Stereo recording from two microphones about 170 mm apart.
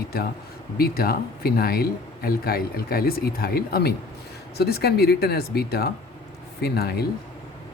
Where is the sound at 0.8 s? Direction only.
65° left (ahead or behind).